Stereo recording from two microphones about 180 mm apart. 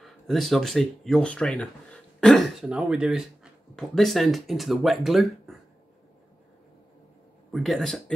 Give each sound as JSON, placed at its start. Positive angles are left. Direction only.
{"t": 0.0, "sound": "speech", "side_deg": 0}
{"t": 7.5, "sound": "speech", "side_deg": 0}